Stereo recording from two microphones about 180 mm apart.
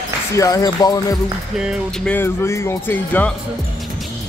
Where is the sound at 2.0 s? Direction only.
10° left (ahead or behind).